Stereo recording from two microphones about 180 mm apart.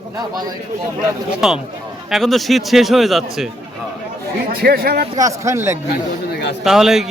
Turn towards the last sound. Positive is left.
turn(degrees=0)  # may be behind; listen again after turning